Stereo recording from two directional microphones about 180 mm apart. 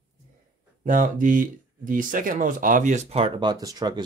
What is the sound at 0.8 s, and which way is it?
Speech, 45° right (ahead or behind).